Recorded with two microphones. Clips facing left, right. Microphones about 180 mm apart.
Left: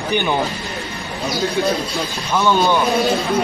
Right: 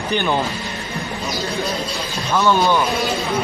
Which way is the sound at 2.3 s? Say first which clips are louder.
Even; 15° left (ahead or behind).